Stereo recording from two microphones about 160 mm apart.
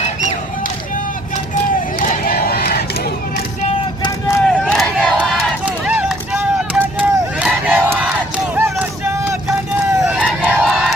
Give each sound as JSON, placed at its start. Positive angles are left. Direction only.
{"t": 2.0, "sound": "crowd", "side_deg": 65}
{"t": 4.0, "sound": "vehicle", "side_deg": 15}
{"t": 4.4, "sound": "battle cry", "side_deg": 0}
{"t": 5.6, "sound": "run", "side_deg": -5}
{"t": 8.5, "sound": "a sound", "side_deg": -15}
{"t": 10.4, "sound": "crowd", "side_deg": 0}